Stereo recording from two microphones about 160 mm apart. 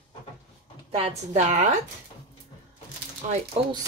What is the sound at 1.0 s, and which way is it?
Speech, 40° right (ahead or behind).